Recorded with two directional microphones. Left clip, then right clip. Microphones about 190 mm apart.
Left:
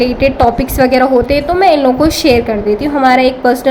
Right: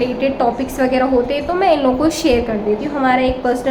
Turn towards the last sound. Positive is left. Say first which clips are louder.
# left 6 dB
turn(degrees=30)  # may be behind; listen again after turning